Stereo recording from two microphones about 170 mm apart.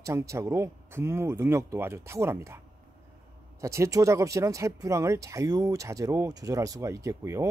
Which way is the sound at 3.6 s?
15° right (ahead or behind).